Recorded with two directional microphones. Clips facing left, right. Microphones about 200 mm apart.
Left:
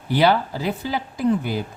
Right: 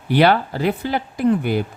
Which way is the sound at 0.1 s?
65° right (ahead or behind).